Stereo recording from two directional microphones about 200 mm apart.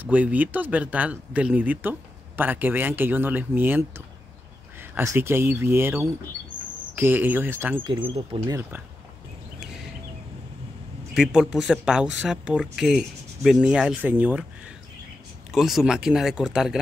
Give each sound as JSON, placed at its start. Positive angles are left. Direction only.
{"t": 0.0, "sound": "speech", "side_deg": -5}
{"t": 7.0, "sound": "speech", "side_deg": -10}
{"t": 7.9, "sound": "speech", "side_deg": -25}
{"t": 11.1, "sound": "speech", "side_deg": -5}
{"t": 15.5, "sound": "speech", "side_deg": 0}